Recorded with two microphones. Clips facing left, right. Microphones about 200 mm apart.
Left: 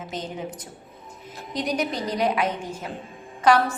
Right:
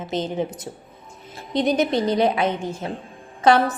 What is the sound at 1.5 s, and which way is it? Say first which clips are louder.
A woman's voice: right 7 dB; 25° right (ahead or behind).